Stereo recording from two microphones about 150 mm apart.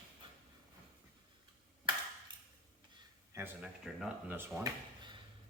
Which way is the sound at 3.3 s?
20° right (ahead or behind).